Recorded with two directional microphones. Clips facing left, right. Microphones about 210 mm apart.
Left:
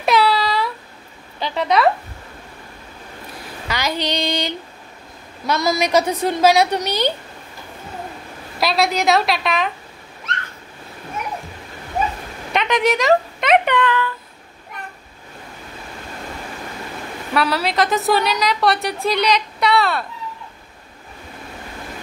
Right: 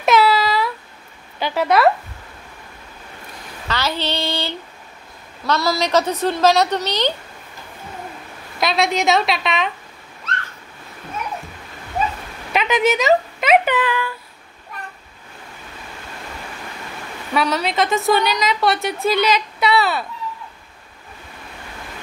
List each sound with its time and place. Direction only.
0.0 s a sound: centre (ahead or behind)
1.4 s speech: 5° right (ahead or behind)
3.6 s a woman's voice: 15° left (ahead or behind)
8.5 s a woman's voice: centre (ahead or behind)
12.5 s a sound: 5° right (ahead or behind)
17.3 s a woman's voice: centre (ahead or behind)